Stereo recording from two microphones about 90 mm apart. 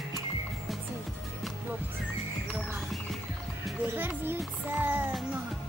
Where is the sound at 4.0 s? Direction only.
20° right (ahead or behind).